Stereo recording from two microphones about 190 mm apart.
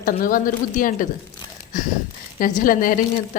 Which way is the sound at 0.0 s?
45° left (ahead or behind).